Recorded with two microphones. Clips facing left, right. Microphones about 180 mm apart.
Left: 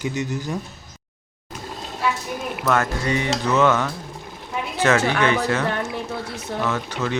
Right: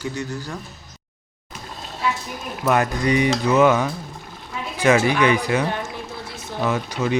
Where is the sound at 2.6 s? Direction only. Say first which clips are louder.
Right 3 dB; 15° right (ahead or behind).